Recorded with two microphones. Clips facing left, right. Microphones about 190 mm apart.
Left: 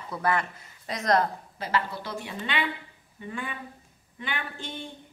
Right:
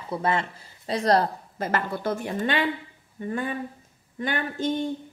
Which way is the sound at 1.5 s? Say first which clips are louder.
Right 3 dB; 50° right (ahead or behind).